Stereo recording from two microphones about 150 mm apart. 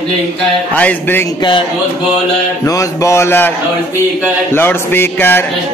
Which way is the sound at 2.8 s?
20° left (ahead or behind).